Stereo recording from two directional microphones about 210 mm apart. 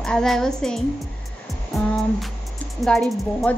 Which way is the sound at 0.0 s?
Centre (ahead or behind).